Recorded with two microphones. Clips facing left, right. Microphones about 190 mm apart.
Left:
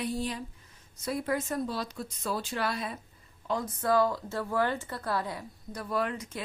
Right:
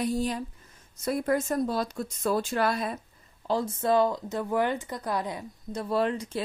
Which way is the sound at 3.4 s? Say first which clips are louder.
Right 4 dB; 30° right (ahead or behind).